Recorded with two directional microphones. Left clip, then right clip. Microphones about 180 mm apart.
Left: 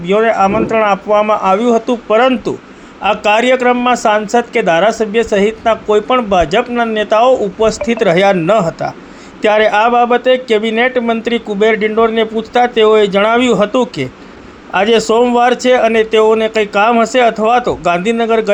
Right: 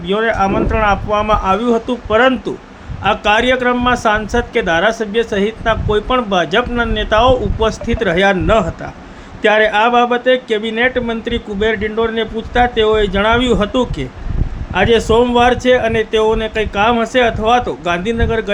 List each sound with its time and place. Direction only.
0.0 s a man's voice: 10° left (ahead or behind)